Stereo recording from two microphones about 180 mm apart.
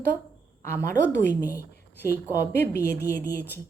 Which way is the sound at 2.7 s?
65° left (ahead or behind).